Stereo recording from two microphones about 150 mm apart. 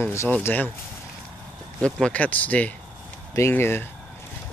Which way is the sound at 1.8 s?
10° left (ahead or behind).